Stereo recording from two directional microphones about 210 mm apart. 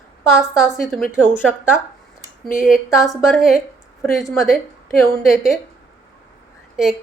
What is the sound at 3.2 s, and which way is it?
A woman's voice, centre (ahead or behind).